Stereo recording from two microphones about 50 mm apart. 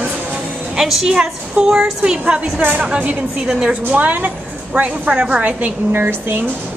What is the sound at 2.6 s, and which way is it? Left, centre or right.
Speech, right.